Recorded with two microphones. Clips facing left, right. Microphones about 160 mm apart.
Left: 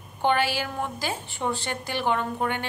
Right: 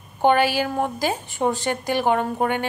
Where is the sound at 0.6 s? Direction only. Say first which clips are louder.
Right 7 dB; 40° right (ahead or behind).